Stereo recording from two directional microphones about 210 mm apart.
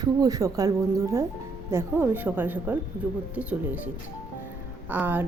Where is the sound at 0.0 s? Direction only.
15° right (ahead or behind).